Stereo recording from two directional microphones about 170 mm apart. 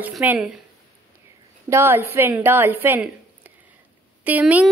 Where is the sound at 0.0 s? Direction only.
10° right (ahead or behind).